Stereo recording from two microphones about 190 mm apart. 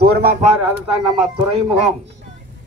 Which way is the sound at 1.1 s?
30° right (ahead or behind).